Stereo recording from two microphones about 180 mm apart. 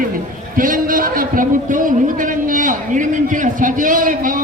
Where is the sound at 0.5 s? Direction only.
50° right (ahead or behind).